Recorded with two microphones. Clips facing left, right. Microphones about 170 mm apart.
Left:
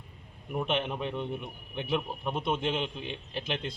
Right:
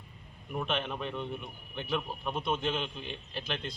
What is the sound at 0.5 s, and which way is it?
A man's voice, 20° left (ahead or behind).